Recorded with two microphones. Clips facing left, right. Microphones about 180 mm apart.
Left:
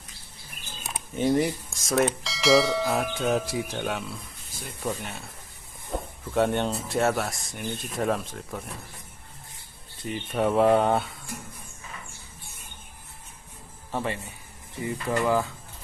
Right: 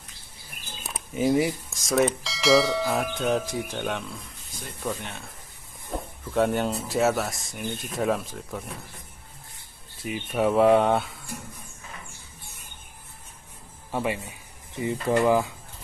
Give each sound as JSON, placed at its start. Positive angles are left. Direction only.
{"t": 0.8, "sound": "speech", "side_deg": -5}
{"t": 5.9, "sound": "a sound", "side_deg": 0}
{"t": 6.3, "sound": "speech", "side_deg": 0}
{"t": 10.0, "sound": "speech", "side_deg": -5}
{"t": 13.9, "sound": "speech", "side_deg": -10}